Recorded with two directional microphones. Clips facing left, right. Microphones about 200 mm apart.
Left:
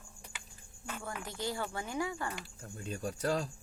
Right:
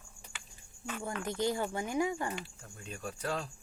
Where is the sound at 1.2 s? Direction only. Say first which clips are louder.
Right 6 dB; 20° right (ahead or behind).